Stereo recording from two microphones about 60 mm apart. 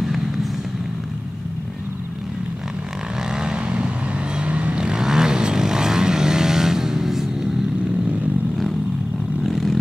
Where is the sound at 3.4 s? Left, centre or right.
Centre.